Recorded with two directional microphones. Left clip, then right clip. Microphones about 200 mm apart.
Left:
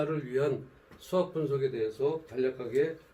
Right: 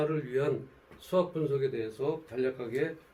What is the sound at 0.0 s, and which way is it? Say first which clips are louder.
A man's voice: even; 15° right (ahead or behind).